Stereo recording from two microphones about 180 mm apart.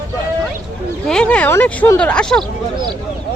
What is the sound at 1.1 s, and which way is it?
Speech, 5° left (ahead or behind).